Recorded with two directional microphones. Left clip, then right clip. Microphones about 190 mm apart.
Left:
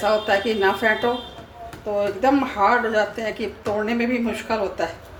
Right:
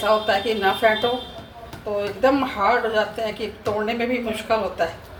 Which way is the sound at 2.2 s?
30° left (ahead or behind).